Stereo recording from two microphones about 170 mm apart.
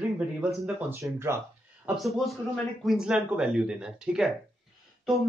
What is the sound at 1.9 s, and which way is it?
A man's voice, centre (ahead or behind).